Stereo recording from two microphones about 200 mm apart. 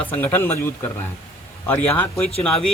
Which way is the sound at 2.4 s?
Centre (ahead or behind).